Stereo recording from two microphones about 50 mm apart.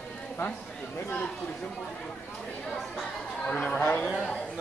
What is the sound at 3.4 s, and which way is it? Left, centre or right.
Speech, centre.